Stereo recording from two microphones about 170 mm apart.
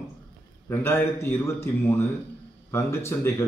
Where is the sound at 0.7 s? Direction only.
15° left (ahead or behind).